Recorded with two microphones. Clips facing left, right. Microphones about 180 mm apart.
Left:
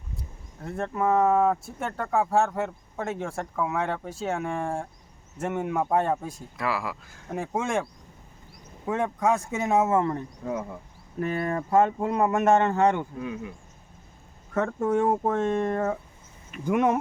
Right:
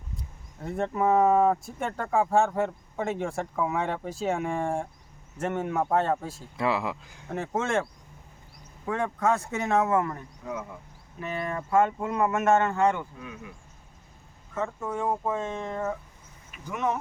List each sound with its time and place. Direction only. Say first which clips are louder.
0.2 s speech: even; centre (ahead or behind)
6.6 s speech: right 2 dB; 25° right (ahead or behind)
7.3 s speech: even; 10° left (ahead or behind)
9.0 s speech: even; 15° left (ahead or behind); by 10.7 s 35° left (ahead or behind)
11.2 s speech: left 5 dB; 50° left (ahead or behind)
11.5 s speech: left 1 dB; 35° left (ahead or behind)
12.5 s speech: left 2 dB; 20° left (ahead or behind)
12.7 s speech: left 2 dB; 35° left (ahead or behind)
14.5 s speech: left 7 dB; 70° left (ahead or behind); by 17.0 s 55° left (ahead or behind)